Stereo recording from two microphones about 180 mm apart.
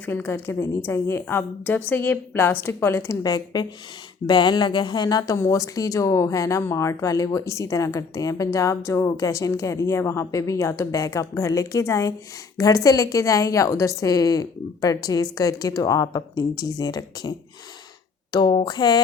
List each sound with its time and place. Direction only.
0.0 s a woman's voice: 10° left (ahead or behind)